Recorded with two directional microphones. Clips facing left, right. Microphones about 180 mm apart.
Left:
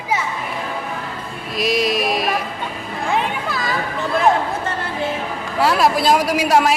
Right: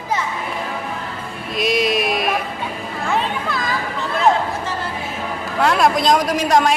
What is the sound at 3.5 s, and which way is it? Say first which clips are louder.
Children playing: even; centre (ahead or behind).